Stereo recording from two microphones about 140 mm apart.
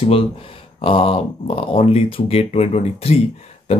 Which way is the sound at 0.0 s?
40° left (ahead or behind).